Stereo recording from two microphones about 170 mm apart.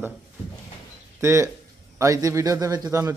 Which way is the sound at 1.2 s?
15° right (ahead or behind).